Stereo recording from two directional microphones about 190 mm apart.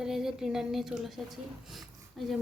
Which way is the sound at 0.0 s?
Centre (ahead or behind).